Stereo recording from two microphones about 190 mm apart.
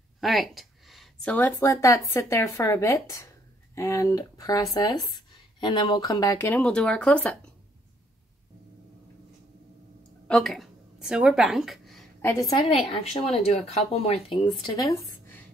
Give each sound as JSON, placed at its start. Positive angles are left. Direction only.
{"t": 0.2, "sound": "a woman's voice", "side_deg": 0}
{"t": 6.6, "sound": "speech", "side_deg": 5}
{"t": 10.2, "sound": "a sound", "side_deg": 0}
{"t": 12.3, "sound": "a woman's voice", "side_deg": 20}